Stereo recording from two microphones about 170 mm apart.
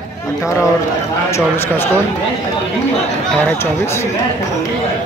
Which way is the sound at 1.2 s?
15° left (ahead or behind).